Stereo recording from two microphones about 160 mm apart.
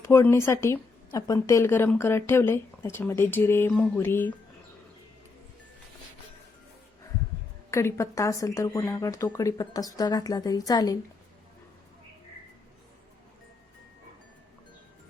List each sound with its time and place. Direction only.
0.0 s a woman's voice: 15° left (ahead or behind)
7.7 s speech: 15° left (ahead or behind)